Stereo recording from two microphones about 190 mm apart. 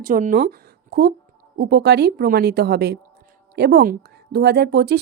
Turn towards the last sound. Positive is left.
turn(degrees=-60)  # may be behind; listen again after turning